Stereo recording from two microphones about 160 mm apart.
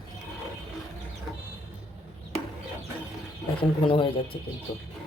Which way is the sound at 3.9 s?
30° left (ahead or behind).